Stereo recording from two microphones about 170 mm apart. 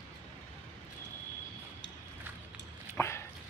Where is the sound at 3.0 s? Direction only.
15° left (ahead or behind).